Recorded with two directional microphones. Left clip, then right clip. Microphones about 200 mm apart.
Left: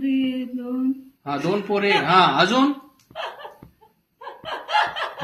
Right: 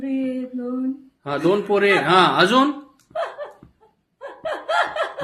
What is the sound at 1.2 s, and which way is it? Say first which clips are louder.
A man's voice: right 4 dB; 45° right (ahead or behind).